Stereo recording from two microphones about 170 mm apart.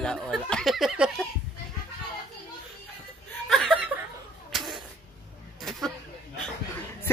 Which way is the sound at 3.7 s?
5° right (ahead or behind).